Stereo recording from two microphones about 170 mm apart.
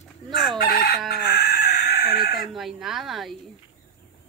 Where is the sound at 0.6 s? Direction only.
65° left (ahead or behind).